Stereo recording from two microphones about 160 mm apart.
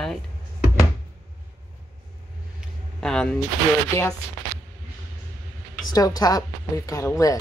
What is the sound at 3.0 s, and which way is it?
Speech, 5° left (ahead or behind).